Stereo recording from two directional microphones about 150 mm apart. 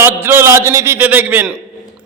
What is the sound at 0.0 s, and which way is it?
A man's voice, 15° right (ahead or behind).